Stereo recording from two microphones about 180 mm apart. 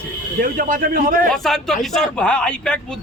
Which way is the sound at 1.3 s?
Centre (ahead or behind).